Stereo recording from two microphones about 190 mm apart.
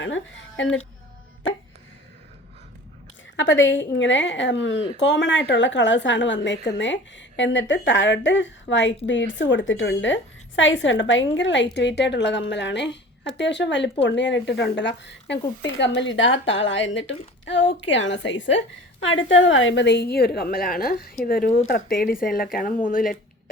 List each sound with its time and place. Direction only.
0.0 s speech: 80° left
3.3 s a woman's voice: 75° left (ahead or behind); by 23.1 s 45° left (ahead or behind)